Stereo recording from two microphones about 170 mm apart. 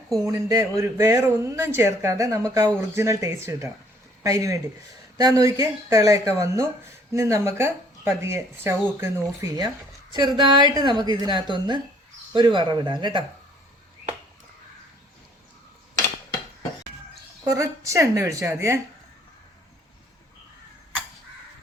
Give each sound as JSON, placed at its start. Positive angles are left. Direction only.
{"t": 0.1, "sound": "speech", "side_deg": -20}
{"t": 17.4, "sound": "speech", "side_deg": -20}